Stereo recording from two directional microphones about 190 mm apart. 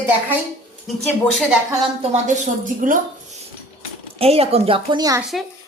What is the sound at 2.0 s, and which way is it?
A woman's voice, 40° right (ahead or behind).